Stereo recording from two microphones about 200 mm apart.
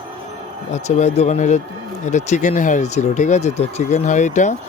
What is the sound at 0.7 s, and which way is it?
Speech, 35° left (ahead or behind).